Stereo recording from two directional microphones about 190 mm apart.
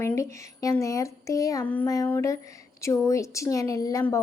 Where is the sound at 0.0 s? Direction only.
15° left (ahead or behind).